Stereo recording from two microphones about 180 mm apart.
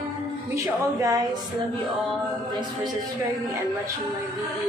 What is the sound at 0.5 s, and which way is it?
Music, 20° right (ahead or behind).